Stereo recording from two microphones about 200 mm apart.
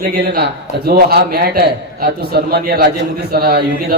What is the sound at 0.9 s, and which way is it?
A man's voice, 50° right (ahead or behind).